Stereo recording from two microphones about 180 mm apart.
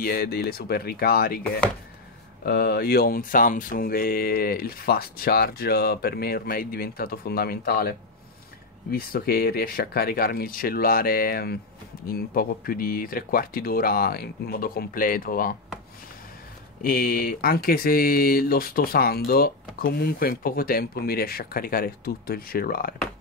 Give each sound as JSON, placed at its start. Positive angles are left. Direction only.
{"t": 0.0, "sound": "speech", "side_deg": 55}
{"t": 2.4, "sound": "speech", "side_deg": 60}
{"t": 8.9, "sound": "speech", "side_deg": 60}
{"t": 16.8, "sound": "speech", "side_deg": 55}